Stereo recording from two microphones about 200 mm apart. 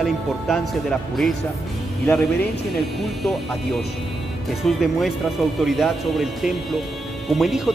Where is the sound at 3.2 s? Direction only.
Centre (ahead or behind).